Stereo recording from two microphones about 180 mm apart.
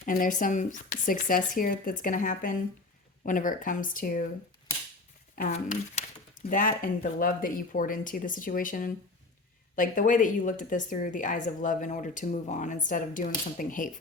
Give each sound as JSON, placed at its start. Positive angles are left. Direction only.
{"t": 0.0, "sound": "a woman's voice", "side_deg": 50}
{"t": 5.4, "sound": "a woman's voice", "side_deg": 45}